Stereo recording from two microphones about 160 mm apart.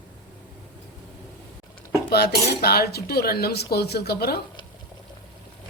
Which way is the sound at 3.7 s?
85° left.